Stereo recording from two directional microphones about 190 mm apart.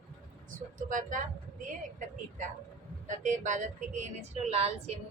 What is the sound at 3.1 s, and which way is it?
Speech, 40° right (ahead or behind).